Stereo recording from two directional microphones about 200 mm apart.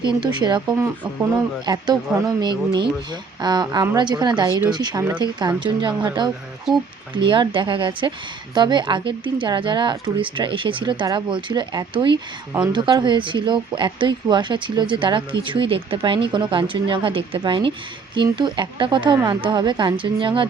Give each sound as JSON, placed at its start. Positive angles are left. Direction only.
{"t": 0.0, "sound": "speech", "side_deg": -20}
{"t": 6.7, "sound": "speech", "side_deg": -5}
{"t": 7.2, "sound": "speech", "side_deg": -25}